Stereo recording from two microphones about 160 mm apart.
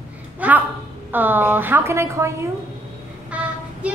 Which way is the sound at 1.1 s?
10° right (ahead or behind).